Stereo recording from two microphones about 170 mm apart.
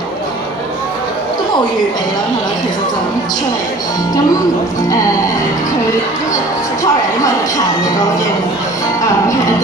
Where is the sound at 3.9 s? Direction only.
20° left (ahead or behind).